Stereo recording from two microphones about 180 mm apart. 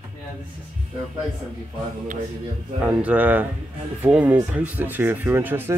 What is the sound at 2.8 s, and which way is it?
Speech, 5° right (ahead or behind).